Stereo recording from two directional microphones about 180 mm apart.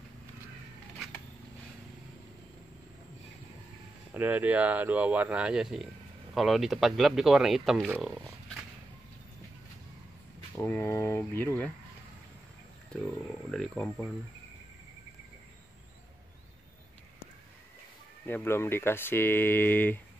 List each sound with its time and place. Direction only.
4.1 s speech: 10° right (ahead or behind)
10.5 s speech: 15° left (ahead or behind)
13.5 s speech: 5° left (ahead or behind)
18.2 s speech: 15° left (ahead or behind)